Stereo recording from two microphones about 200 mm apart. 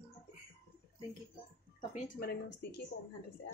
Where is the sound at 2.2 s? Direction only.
55° left (ahead or behind).